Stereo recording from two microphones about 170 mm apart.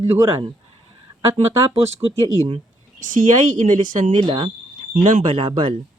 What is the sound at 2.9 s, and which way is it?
Speech, 50° right (ahead or behind).